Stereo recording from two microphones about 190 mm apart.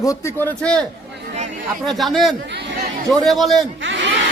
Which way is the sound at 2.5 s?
60° right (ahead or behind).